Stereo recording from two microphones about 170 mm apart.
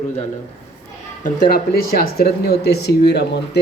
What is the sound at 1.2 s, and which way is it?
Speech, 60° left (ahead or behind).